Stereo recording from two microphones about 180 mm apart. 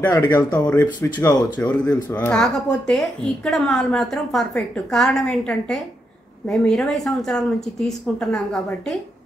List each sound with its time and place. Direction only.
0.1 s speech: 20° left (ahead or behind)
2.1 s a woman's voice: 5° left (ahead or behind)